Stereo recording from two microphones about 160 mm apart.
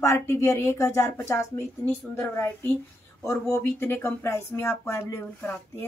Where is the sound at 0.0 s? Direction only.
15° left (ahead or behind).